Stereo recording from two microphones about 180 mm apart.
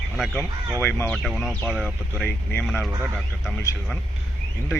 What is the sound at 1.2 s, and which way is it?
Speech, centre (ahead or behind).